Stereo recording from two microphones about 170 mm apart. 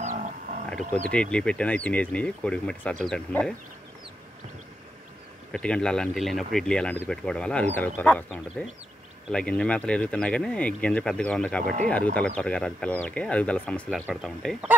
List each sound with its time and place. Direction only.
1.0 s speech: 5° left (ahead or behind)
5.5 s speech: 5° left (ahead or behind)
11.6 s speech: 50° right (ahead or behind)
11.9 s speech: 5° left (ahead or behind)